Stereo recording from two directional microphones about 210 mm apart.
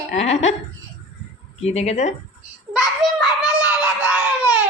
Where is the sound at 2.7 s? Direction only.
Centre (ahead or behind).